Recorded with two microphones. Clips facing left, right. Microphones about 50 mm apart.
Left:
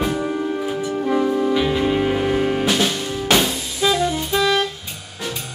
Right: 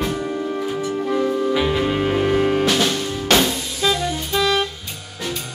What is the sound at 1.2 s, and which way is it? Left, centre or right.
Music, centre.